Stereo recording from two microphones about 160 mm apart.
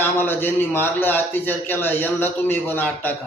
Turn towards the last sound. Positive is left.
turn(degrees=10)  # may be behind; listen again after turning